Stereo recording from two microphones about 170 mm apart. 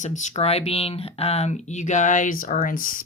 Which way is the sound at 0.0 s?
45° left (ahead or behind).